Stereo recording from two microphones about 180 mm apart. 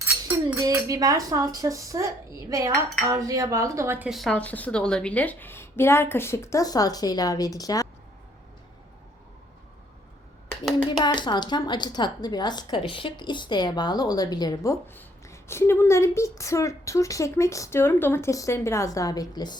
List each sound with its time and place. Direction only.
0.0 s speech: 15° right (ahead or behind); by 7.9 s 20° left (ahead or behind)
11.0 s a woman's voice: 25° left (ahead or behind)